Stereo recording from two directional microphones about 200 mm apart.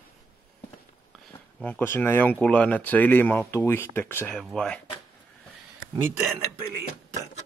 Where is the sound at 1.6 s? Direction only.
10° left (ahead or behind).